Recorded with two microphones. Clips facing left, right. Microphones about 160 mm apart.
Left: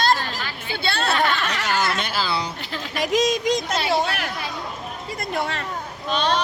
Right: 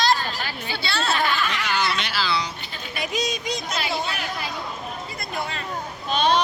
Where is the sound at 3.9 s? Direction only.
70° left (ahead or behind).